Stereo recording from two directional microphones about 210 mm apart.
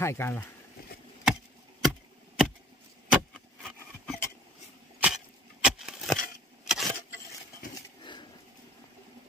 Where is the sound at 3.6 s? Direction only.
Centre (ahead or behind).